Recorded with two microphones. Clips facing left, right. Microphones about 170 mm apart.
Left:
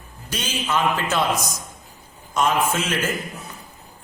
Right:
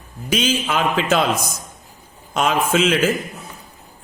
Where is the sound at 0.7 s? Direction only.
70° right (ahead or behind).